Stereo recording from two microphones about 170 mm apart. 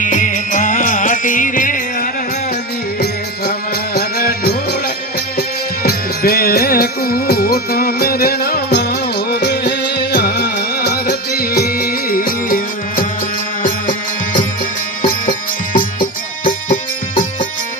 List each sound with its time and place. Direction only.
0.0 s music: 50° left (ahead or behind)
3.9 s music: 65° left (ahead or behind)
15.0 s music: 50° left (ahead or behind)